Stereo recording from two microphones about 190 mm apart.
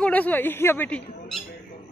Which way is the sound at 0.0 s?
10° left (ahead or behind).